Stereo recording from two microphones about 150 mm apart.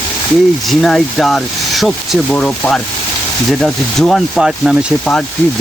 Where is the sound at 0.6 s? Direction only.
5° left (ahead or behind).